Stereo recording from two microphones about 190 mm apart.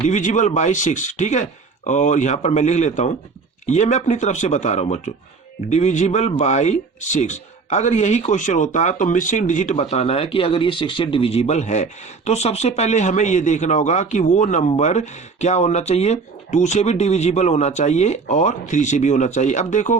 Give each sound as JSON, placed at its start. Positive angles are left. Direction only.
{"t": 0.0, "sound": "speech", "side_deg": 40}